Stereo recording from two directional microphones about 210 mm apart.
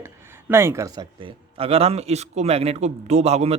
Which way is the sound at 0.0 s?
10° right (ahead or behind).